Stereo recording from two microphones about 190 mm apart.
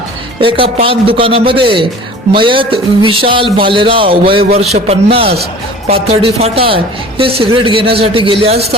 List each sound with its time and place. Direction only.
0.3 s a man's voice: 30° right (ahead or behind)